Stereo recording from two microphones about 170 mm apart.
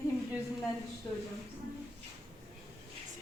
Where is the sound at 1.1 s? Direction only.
10° left (ahead or behind).